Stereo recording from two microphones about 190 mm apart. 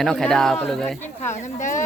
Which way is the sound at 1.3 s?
40° left (ahead or behind).